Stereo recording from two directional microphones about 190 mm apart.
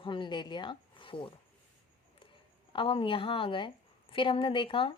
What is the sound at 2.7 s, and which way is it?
Speech, 30° left (ahead or behind).